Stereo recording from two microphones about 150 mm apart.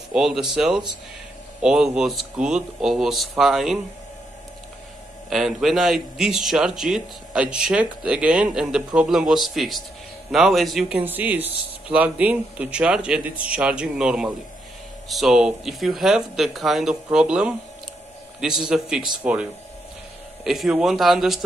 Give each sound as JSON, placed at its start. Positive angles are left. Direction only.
{"t": 0.1, "sound": "a man's voice", "side_deg": -5}
{"t": 5.3, "sound": "a man's voice", "side_deg": 0}
{"t": 20.4, "sound": "a man's voice", "side_deg": 0}